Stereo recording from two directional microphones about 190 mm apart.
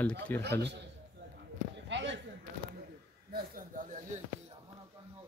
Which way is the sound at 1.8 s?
70° right (ahead or behind).